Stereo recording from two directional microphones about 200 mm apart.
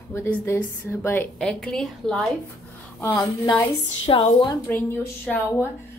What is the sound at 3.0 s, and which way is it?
A woman's voice, 15° left (ahead or behind).